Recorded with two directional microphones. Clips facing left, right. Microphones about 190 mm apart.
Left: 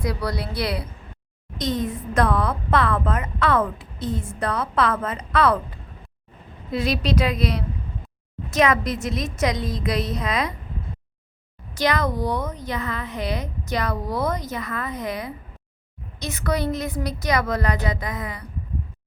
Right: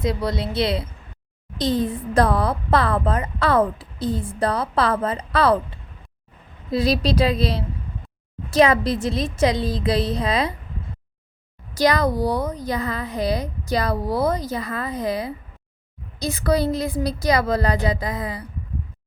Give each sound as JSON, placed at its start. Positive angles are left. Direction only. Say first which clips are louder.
{"t": 0.0, "sound": "a woman's voice", "louder": "right 3 dB", "side_deg": -20}
{"t": 11.7, "sound": "a woman's voice", "louder": "right 4 dB", "side_deg": -35}